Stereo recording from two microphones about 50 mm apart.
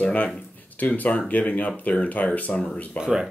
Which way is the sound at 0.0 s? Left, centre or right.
Left.